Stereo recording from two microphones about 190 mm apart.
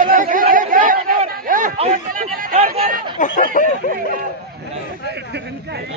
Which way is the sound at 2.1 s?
50° right (ahead or behind).